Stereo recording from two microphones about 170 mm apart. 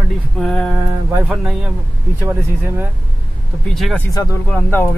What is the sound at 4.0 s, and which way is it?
Speech, 20° left (ahead or behind).